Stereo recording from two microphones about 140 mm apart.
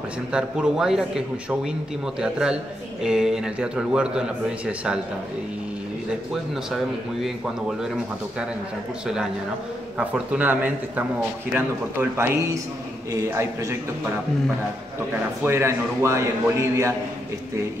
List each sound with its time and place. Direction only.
0.3 s speech: 5° right (ahead or behind)
6.3 s speech: centre (ahead or behind)
9.9 s a man's voice: 10° right (ahead or behind)
15.4 s a man's voice: 20° right (ahead or behind)